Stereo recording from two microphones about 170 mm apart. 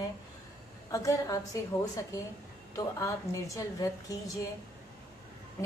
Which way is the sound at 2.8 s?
20° left (ahead or behind).